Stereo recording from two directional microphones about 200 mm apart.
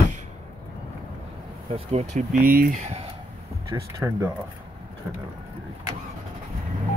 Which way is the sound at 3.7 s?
15° right (ahead or behind).